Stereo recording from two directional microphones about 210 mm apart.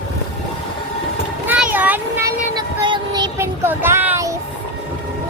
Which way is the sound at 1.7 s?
10° right (ahead or behind).